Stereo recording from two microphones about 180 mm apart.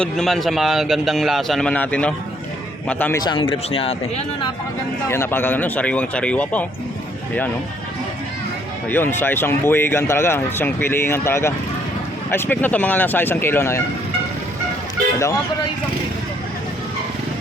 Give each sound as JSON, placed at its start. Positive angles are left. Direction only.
{"t": 0.0, "sound": "a man's voice", "side_deg": 5}
{"t": 3.2, "sound": "speech", "side_deg": 30}
{"t": 5.0, "sound": "speech", "side_deg": 15}
{"t": 8.9, "sound": "speech", "side_deg": 10}